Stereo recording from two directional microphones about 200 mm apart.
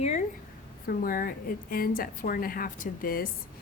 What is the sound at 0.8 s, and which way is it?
A woman's voice, 45° left (ahead or behind).